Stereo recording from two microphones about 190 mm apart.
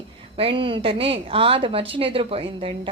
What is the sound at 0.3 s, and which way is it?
A woman's voice, 30° right (ahead or behind).